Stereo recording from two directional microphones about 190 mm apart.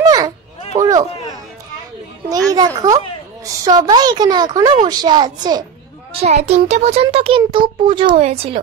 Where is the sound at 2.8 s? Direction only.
20° right (ahead or behind).